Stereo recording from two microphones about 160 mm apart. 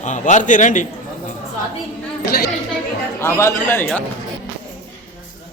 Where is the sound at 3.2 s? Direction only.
15° left (ahead or behind).